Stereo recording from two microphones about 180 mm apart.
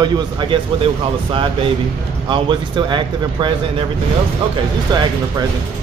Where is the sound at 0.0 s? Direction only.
25° right (ahead or behind).